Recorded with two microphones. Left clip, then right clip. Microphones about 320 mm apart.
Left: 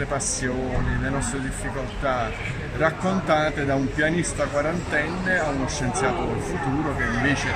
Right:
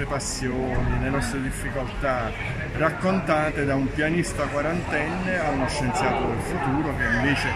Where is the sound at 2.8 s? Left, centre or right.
Centre.